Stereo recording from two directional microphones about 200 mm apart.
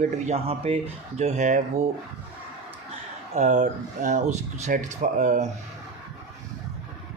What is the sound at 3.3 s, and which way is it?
Speech, 35° right (ahead or behind).